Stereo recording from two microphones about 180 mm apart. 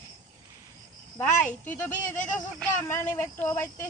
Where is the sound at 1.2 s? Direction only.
10° left (ahead or behind).